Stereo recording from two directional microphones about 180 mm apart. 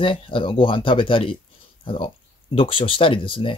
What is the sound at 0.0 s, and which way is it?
Speech, 30° left (ahead or behind).